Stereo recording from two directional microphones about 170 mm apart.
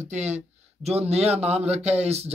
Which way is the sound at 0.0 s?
40° right (ahead or behind).